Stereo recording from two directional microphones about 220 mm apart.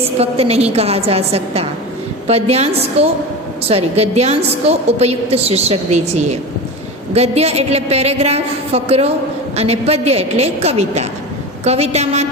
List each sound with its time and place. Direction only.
0.2 s a woman's voice: 25° right (ahead or behind)